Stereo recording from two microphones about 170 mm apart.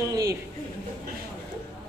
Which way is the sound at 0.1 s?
20° right (ahead or behind).